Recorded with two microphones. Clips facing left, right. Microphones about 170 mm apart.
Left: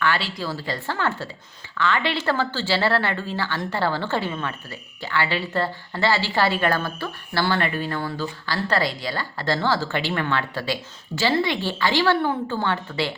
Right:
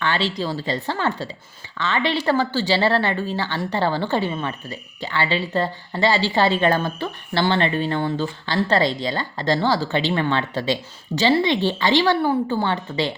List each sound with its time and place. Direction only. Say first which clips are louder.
0.0 s speech: right 2 dB; 20° right (ahead or behind)